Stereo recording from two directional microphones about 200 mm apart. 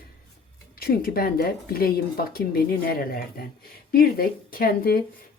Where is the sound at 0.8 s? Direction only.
50° left (ahead or behind).